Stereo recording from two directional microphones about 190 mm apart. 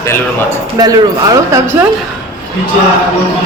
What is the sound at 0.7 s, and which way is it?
Speech, 20° right (ahead or behind).